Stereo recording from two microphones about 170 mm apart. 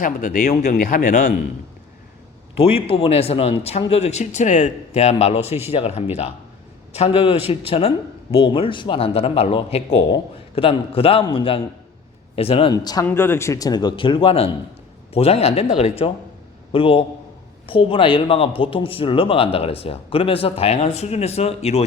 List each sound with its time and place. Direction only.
0.0 s speech: 50° left (ahead or behind)
2.6 s speech: 35° left (ahead or behind)